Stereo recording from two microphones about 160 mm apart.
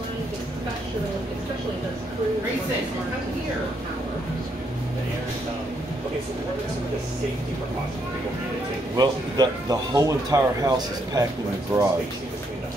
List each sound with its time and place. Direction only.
8.9 s speech: 25° right (ahead or behind)
11.7 s speech: 20° right (ahead or behind)